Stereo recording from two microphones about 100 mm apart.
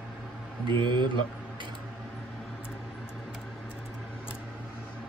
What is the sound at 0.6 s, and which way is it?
Speech, 50° right (ahead or behind).